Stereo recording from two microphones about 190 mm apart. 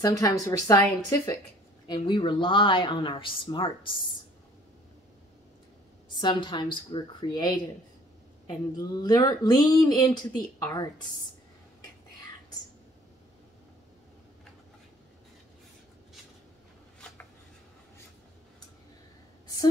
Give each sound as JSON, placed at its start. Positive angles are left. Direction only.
{"t": 0.0, "sound": "speech", "side_deg": 20}
{"t": 1.9, "sound": "speech", "side_deg": 25}
{"t": 6.2, "sound": "speech", "side_deg": 25}